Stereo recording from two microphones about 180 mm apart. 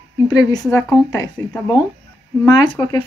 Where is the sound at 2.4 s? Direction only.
20° left (ahead or behind).